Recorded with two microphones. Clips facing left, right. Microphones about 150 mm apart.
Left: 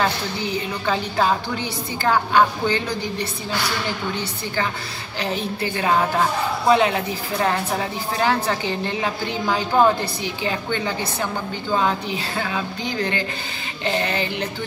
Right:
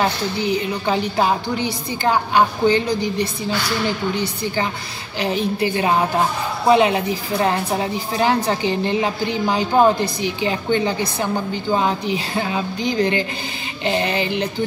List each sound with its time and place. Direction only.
0.0 s a woman's voice: 15° right (ahead or behind)
6.7 s music: 20° right (ahead or behind)
7.4 s a woman's voice: 20° right (ahead or behind)
13.8 s music: 20° right (ahead or behind)